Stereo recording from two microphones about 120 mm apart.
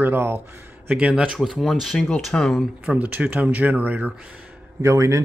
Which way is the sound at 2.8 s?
15° right (ahead or behind).